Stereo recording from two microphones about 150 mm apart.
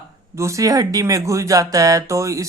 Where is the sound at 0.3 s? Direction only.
20° right (ahead or behind).